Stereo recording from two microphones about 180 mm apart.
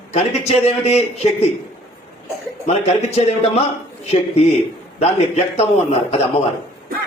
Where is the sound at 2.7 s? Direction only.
35° left (ahead or behind).